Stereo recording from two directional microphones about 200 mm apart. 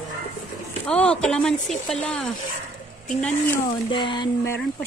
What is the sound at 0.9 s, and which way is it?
Speech, 5° left (ahead or behind).